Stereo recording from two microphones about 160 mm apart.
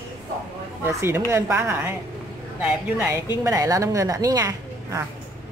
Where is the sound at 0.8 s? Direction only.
15° right (ahead or behind).